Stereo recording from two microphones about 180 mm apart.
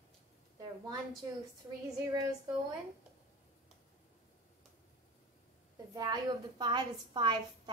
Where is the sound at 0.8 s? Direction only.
20° right (ahead or behind).